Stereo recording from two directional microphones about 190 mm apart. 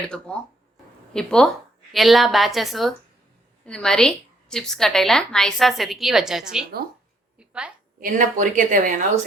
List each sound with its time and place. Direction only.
0.3 s a woman's voice: 5° left (ahead or behind)
7.3 s a sound: 5° right (ahead or behind)
7.9 s a woman's voice: 45° right (ahead or behind)